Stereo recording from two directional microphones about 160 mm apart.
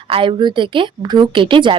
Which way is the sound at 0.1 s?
30° right (ahead or behind).